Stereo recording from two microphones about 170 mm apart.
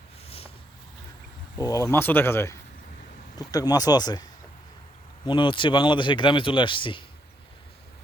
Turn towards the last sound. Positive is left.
turn(degrees=30)  # may be behind; listen again after turning